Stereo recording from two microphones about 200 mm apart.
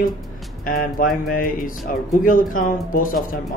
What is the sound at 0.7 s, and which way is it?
Speech, 45° left (ahead or behind).